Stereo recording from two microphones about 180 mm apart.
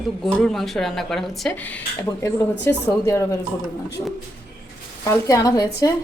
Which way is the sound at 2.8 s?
15° left (ahead or behind).